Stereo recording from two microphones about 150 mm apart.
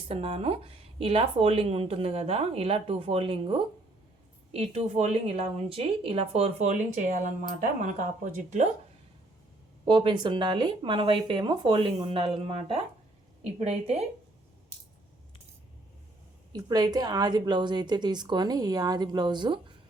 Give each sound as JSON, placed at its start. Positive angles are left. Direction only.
{"t": 0.1, "sound": "a woman's voice", "side_deg": -40}
{"t": 9.8, "sound": "a woman's voice", "side_deg": -30}
{"t": 16.5, "sound": "a woman's voice", "side_deg": -25}